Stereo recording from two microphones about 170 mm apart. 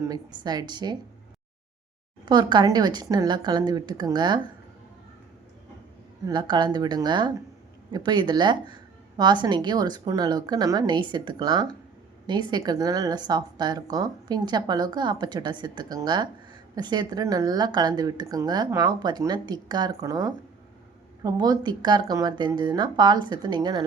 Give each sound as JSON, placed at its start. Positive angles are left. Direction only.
{"t": 0.1, "sound": "a woman's voice", "side_deg": -25}
{"t": 2.2, "sound": "a woman's voice", "side_deg": -25}
{"t": 6.2, "sound": "a woman's voice", "side_deg": -25}